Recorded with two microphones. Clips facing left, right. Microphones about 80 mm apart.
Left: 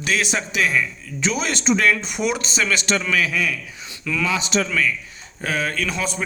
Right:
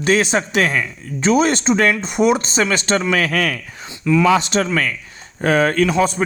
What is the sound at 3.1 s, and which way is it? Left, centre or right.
A man's voice, right.